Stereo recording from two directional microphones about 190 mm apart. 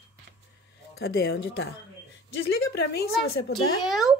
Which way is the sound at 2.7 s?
60° left (ahead or behind).